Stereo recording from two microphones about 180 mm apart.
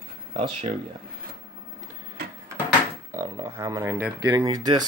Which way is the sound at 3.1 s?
20° right (ahead or behind).